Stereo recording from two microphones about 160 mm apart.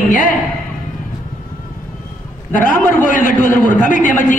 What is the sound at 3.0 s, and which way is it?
A man's voice, 60° left (ahead or behind).